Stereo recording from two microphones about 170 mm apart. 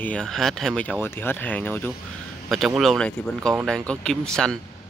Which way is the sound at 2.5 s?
Centre (ahead or behind).